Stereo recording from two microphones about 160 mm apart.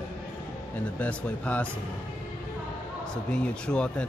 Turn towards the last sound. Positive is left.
turn(degrees=5)  # may be behind; listen again after turning